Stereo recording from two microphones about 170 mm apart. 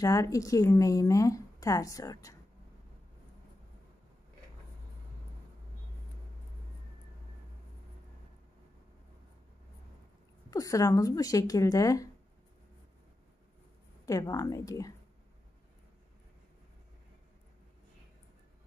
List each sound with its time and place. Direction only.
0.0 s speech: 20° left (ahead or behind)
10.5 s speech: 20° left (ahead or behind)
14.0 s speech: 20° left (ahead or behind)